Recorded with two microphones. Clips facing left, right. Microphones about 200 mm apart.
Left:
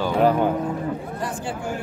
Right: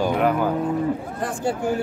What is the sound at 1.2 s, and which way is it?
Speech, 40° right (ahead or behind).